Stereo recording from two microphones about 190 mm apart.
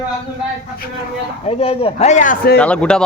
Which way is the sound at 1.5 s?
30° left (ahead or behind).